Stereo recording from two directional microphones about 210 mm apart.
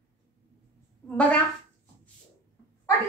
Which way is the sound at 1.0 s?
5° left (ahead or behind).